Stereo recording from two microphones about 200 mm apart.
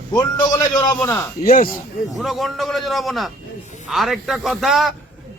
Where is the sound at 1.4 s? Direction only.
45° left (ahead or behind).